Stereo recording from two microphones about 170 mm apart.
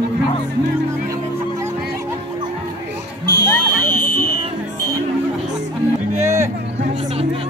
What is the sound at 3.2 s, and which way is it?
Music, 60° left (ahead or behind).